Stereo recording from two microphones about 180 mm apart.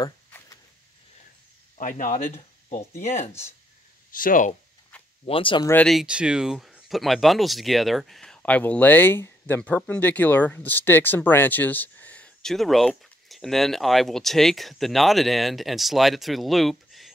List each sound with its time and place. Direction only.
0.0 s a sound: 20° left (ahead or behind)
1.8 s speech: 45° left (ahead or behind)
4.1 s speech: 50° left (ahead or behind)
5.2 s speech: 30° left (ahead or behind)
5.7 s speech: 5° left (ahead or behind)